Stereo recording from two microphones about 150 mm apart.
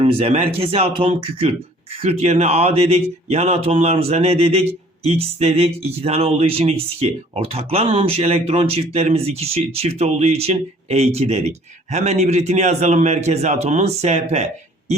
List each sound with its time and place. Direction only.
0.0 s speech: 40° right (ahead or behind)